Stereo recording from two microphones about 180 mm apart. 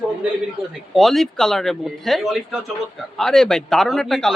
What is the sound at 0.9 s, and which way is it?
Speech, centre (ahead or behind).